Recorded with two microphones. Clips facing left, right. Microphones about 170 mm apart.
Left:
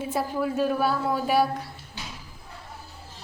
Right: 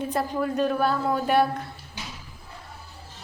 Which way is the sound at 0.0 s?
5° left (ahead or behind).